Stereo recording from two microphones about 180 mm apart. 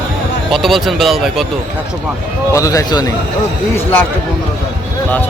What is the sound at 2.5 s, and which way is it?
Speech, 20° left (ahead or behind).